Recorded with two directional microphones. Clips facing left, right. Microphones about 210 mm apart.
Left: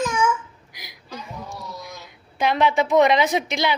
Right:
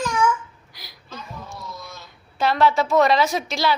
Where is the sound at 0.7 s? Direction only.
15° left (ahead or behind).